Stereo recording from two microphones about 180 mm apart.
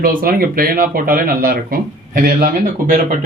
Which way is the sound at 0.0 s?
50° right (ahead or behind).